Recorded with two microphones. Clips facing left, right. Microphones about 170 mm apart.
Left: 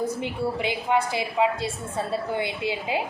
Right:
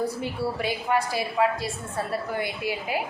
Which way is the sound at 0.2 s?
20° left (ahead or behind).